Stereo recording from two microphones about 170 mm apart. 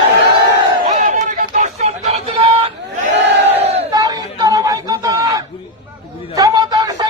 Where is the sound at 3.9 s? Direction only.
20° right (ahead or behind).